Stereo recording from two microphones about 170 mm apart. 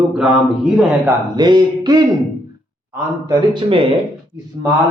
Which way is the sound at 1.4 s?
25° right (ahead or behind).